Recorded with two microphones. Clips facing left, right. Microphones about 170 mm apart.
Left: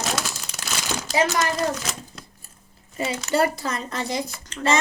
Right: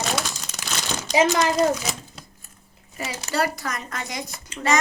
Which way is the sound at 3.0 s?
25° left (ahead or behind).